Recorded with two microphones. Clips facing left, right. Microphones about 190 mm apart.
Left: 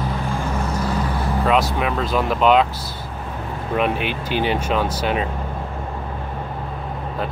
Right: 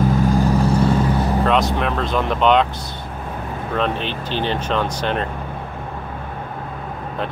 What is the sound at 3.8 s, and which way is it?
Speech, 10° left (ahead or behind).